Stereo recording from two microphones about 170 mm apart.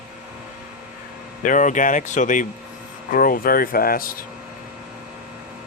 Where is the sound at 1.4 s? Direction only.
50° left (ahead or behind).